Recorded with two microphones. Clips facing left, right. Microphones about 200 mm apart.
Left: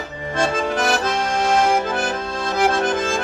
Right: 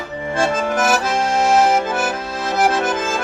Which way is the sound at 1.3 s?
5° right (ahead or behind).